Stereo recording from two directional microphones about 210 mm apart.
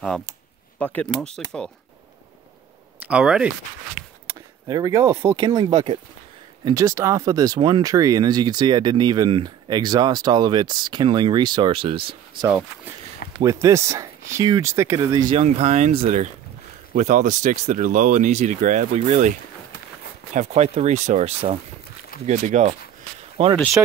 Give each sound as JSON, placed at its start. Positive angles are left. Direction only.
{"t": 0.7, "sound": "speech", "side_deg": 5}
{"t": 3.0, "sound": "speech", "side_deg": -5}
{"t": 4.3, "sound": "speech", "side_deg": -15}
{"t": 13.4, "sound": "speech", "side_deg": -15}
{"t": 15.2, "sound": "speech", "side_deg": -30}
{"t": 20.3, "sound": "speech", "side_deg": -30}